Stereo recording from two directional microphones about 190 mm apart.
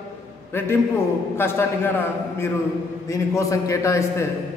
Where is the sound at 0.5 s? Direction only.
10° left (ahead or behind).